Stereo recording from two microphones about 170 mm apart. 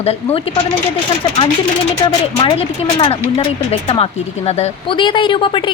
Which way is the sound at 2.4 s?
35° left (ahead or behind).